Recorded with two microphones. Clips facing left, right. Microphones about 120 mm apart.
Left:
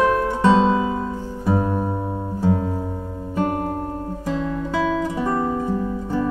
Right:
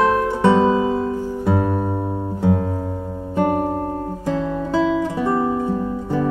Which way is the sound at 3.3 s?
20° right (ahead or behind).